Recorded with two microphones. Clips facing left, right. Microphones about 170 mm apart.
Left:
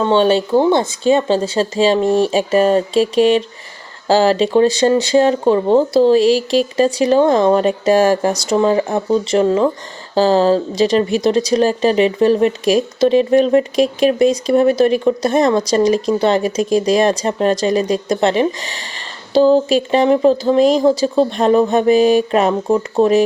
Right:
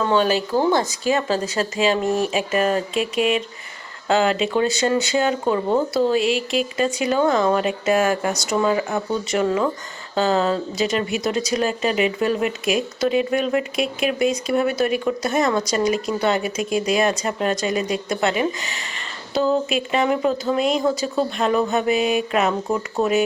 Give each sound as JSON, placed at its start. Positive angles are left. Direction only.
{"t": 0.0, "sound": "speech", "side_deg": 30}